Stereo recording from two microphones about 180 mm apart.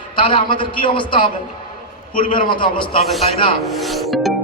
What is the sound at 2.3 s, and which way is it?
Speech, 25° left (ahead or behind).